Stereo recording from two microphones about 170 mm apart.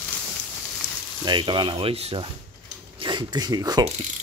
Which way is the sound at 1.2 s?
25° right (ahead or behind).